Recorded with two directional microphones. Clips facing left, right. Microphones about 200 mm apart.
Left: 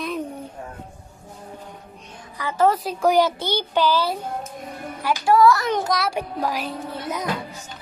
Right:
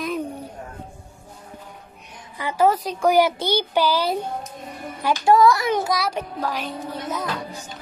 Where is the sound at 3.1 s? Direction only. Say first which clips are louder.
Right 1 dB; 10° right (ahead or behind).